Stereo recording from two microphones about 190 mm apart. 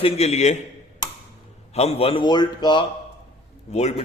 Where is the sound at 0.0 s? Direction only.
35° left (ahead or behind).